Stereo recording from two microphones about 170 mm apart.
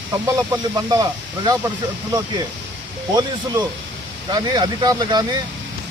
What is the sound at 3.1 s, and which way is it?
A man's voice, 25° right (ahead or behind).